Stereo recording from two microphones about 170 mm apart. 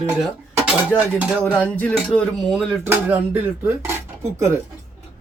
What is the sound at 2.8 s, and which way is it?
Speech, 10° right (ahead or behind).